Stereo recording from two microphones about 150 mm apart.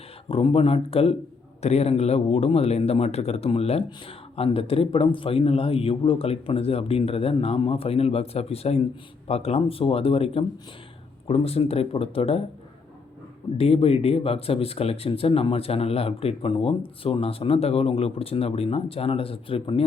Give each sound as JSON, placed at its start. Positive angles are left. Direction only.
{"t": 0.3, "sound": "speech", "side_deg": 40}
{"t": 13.6, "sound": "speech", "side_deg": 40}